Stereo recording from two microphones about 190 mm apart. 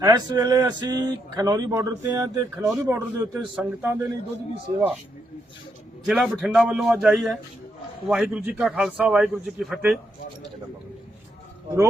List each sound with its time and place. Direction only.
0.0 s speech: 20° right (ahead or behind)
6.1 s a man's voice: centre (ahead or behind)